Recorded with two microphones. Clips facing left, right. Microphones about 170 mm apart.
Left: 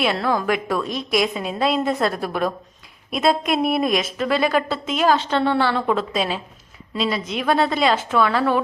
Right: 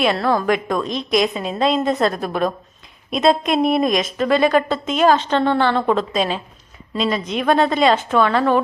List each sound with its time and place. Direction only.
0.0 s a woman's voice: 10° left (ahead or behind)
0.9 s a woman's voice: 20° right (ahead or behind)
1.3 s a woman's voice: 10° left (ahead or behind)
2.1 s a woman's voice: 20° right (ahead or behind)
3.2 s a woman's voice: 5° left (ahead or behind)